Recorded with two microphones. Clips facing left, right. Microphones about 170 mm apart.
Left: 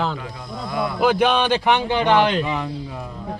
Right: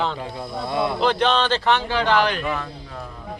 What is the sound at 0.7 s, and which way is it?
Speech, 25° right (ahead or behind).